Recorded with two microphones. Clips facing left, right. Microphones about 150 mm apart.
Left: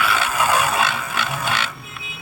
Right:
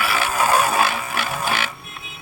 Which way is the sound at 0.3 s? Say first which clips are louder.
Right 3 dB; 30° right (ahead or behind).